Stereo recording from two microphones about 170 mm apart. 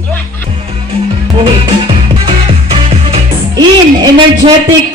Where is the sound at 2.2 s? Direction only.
35° right (ahead or behind).